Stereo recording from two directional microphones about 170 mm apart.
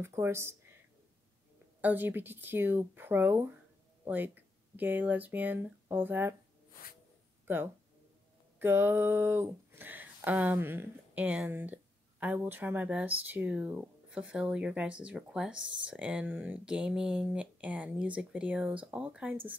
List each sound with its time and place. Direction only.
0.0 s speech: 15° right (ahead or behind)
1.8 s speech: 10° right (ahead or behind)
7.4 s speech: 15° right (ahead or behind)
15.5 s speech: 90° right
15.9 s speech: 5° right (ahead or behind)